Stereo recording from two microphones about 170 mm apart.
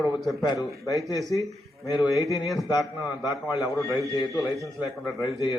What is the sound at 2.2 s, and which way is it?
Speech, 20° left (ahead or behind).